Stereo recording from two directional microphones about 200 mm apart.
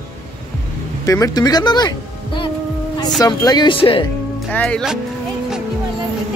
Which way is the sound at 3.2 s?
20° left (ahead or behind).